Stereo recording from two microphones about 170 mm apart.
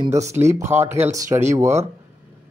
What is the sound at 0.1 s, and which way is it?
Speech, 15° right (ahead or behind).